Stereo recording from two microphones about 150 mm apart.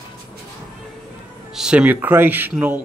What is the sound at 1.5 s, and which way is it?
Speech, 5° right (ahead or behind).